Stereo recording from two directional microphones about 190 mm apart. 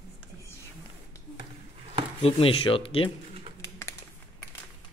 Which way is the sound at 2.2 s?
30° left (ahead or behind).